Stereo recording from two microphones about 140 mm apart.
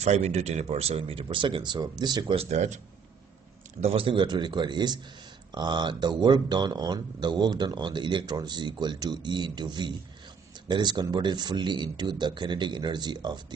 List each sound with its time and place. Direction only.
0.0 s speech: 50° right (ahead or behind); by 2.3 s 30° right (ahead or behind)
2.3 s speech: 55° right (ahead or behind)
3.8 s speech: 40° right (ahead or behind)